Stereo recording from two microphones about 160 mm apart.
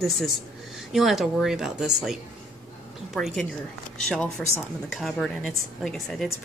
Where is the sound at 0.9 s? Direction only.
Centre (ahead or behind).